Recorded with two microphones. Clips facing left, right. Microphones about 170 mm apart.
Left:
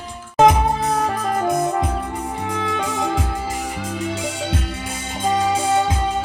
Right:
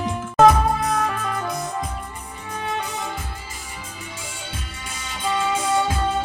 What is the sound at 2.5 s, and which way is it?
Music, 90° left.